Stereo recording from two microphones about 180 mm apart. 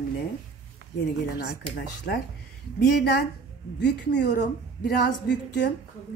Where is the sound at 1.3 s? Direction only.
60° left (ahead or behind).